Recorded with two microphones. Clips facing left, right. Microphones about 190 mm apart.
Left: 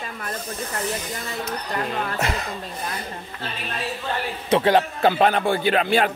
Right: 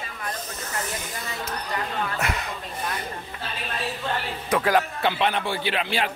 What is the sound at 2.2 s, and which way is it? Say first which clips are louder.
Speech: left 3 dB; 30° left (ahead or behind).